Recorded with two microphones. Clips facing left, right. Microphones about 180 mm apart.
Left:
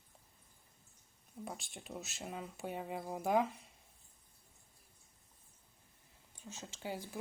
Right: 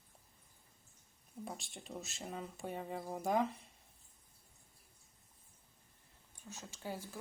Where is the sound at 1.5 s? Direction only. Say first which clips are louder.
Left 1 dB; centre (ahead or behind).